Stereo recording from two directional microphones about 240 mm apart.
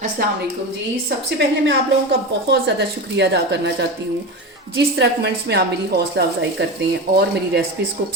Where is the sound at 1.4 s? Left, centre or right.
Right.